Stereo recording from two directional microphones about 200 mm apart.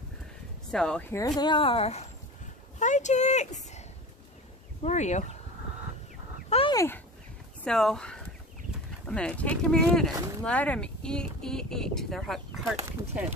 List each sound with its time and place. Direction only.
0.7 s speech: 5° left (ahead or behind)
1.1 s speech: 20° left (ahead or behind); by 3.8 s 35° left (ahead or behind)
4.8 s speech: 35° left (ahead or behind)
6.5 s dog: 25° left (ahead or behind)
7.6 s speech: centre (ahead or behind)